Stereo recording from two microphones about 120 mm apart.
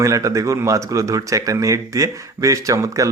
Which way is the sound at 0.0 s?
30° right (ahead or behind).